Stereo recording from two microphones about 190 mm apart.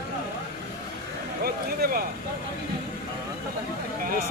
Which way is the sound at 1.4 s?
50° right (ahead or behind).